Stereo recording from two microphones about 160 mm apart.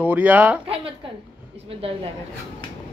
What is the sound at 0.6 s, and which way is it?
Speech, 35° right (ahead or behind).